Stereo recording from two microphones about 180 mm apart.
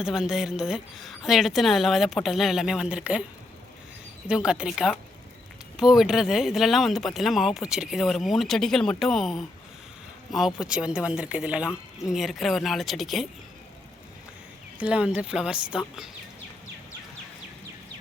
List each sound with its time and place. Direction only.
0.0 s speech: 5° right (ahead or behind)
4.3 s speech: 5° right (ahead or behind)
14.8 s speech: 5° right (ahead or behind)